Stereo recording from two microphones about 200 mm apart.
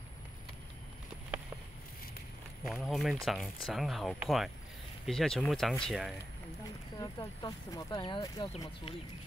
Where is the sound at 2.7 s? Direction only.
Centre (ahead or behind).